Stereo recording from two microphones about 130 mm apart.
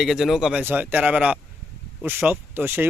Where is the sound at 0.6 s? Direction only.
15° right (ahead or behind).